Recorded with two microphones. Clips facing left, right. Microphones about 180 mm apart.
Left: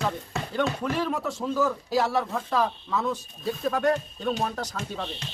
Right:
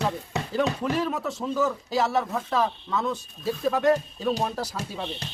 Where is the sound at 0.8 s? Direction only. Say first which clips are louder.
Right 1 dB; centre (ahead or behind).